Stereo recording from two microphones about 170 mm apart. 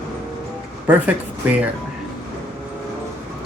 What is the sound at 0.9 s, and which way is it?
Speech, 10° right (ahead or behind).